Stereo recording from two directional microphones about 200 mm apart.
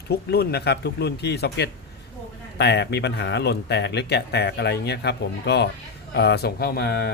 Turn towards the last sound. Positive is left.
turn(degrees=55)  # may be behind; listen again after turning